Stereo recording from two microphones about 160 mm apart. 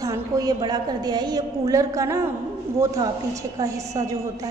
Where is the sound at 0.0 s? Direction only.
20° right (ahead or behind).